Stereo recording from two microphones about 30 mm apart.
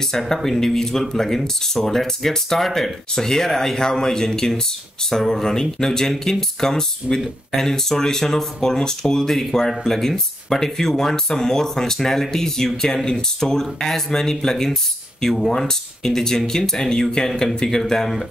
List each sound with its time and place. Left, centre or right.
0.3 s speech: centre